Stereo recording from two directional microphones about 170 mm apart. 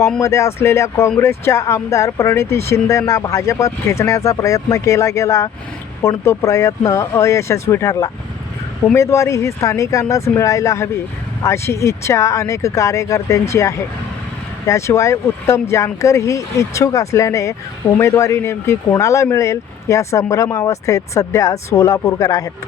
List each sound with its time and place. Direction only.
0.2 s speech: 15° left (ahead or behind)